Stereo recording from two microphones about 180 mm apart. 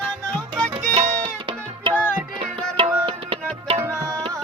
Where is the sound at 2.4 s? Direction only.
30° right (ahead or behind).